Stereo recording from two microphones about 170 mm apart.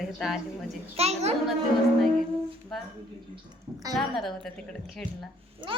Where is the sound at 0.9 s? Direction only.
40° right (ahead or behind).